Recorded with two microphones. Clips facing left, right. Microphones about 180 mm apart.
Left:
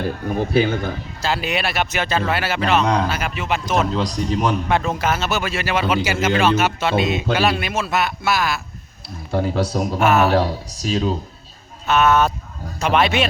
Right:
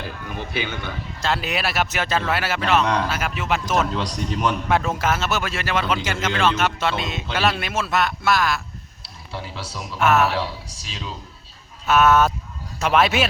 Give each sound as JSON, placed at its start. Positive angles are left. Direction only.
{"t": 0.0, "sound": "a man's voice", "side_deg": 40}
{"t": 1.2, "sound": "speech", "side_deg": 0}
{"t": 3.9, "sound": "a man's voice", "side_deg": 30}
{"t": 4.7, "sound": "speech", "side_deg": 0}
{"t": 9.3, "sound": "speech", "side_deg": 50}
{"t": 10.0, "sound": "speech", "side_deg": 0}
{"t": 10.3, "sound": "speech", "side_deg": 45}
{"t": 11.9, "sound": "speech", "side_deg": -5}